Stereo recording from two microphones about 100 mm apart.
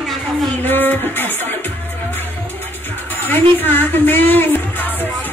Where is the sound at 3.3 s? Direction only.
20° left (ahead or behind).